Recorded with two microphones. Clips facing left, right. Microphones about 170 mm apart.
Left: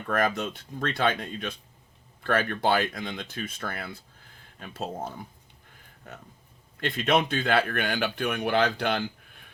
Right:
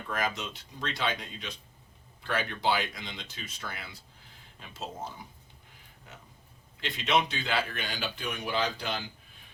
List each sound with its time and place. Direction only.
0.1 s speech: 55° left (ahead or behind)
6.7 s speech: 55° left (ahead or behind)